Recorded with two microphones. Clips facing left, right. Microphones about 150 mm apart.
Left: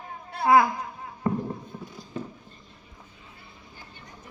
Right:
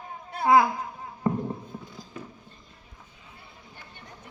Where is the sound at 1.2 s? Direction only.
20° right (ahead or behind).